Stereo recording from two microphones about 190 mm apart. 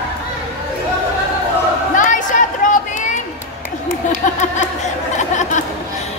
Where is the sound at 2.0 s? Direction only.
40° left (ahead or behind).